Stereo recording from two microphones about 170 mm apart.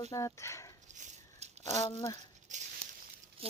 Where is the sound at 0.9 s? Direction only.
45° right (ahead or behind).